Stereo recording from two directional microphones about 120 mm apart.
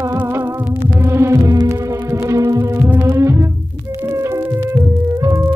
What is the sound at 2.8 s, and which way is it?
Music, 20° right (ahead or behind).